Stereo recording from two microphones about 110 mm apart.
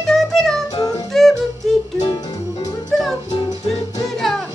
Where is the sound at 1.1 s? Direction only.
5° left (ahead or behind).